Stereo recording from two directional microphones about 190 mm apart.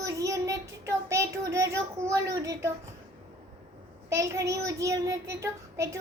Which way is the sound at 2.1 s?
20° right (ahead or behind).